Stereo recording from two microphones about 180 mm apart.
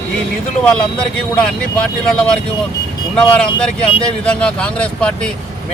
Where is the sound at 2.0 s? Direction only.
5° left (ahead or behind).